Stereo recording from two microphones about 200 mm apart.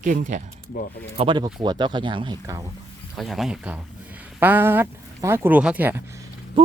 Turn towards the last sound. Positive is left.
turn(degrees=-25)  # may be behind; listen again after turning